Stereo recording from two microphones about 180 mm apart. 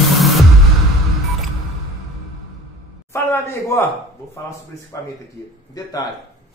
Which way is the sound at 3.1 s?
15° left (ahead or behind).